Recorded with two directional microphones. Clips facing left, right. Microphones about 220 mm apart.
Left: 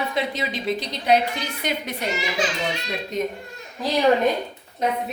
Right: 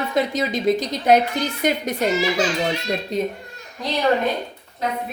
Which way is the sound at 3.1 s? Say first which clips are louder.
Right 1 dB; 35° right (ahead or behind).